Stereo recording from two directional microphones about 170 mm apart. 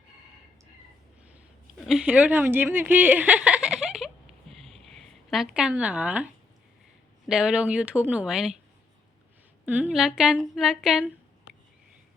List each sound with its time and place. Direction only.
1.9 s a woman's voice: 5° right (ahead or behind)
4.5 s a sound: 35° right (ahead or behind)
5.3 s speech: 5° right (ahead or behind)
7.3 s speech: 5° right (ahead or behind)
9.6 s speech: 10° right (ahead or behind)